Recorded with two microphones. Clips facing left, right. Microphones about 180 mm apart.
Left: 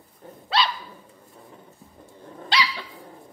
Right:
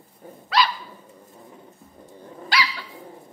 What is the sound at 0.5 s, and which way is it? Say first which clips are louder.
Dog: right 2 dB; 30° left (ahead or behind).